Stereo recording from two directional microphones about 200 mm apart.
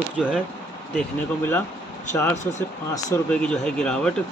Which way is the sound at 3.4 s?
5° left (ahead or behind).